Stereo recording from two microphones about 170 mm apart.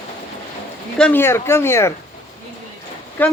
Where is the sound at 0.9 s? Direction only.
10° left (ahead or behind).